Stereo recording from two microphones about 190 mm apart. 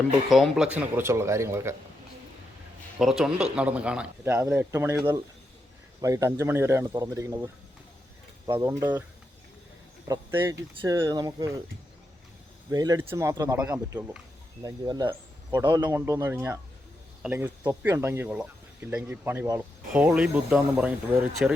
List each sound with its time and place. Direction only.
0.3 s speech: centre (ahead or behind)
0.8 s speech: 10° right (ahead or behind)
3.0 s speech: centre (ahead or behind)
10.1 s speech: 10° right (ahead or behind)
12.7 s speech: 20° right (ahead or behind)
14.6 s speech: 20° right (ahead or behind)